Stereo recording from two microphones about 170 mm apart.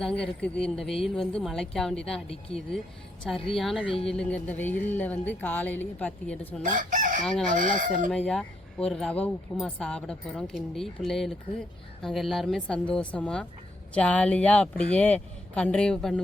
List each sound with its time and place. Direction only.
0.0 s speech: 5° left (ahead or behind)
6.6 s chicken: 50° right (ahead or behind)
8.1 s speech: 5° left (ahead or behind)